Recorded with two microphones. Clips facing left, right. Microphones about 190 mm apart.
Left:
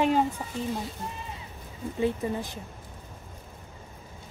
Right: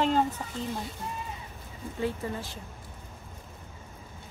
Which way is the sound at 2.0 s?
15° left (ahead or behind).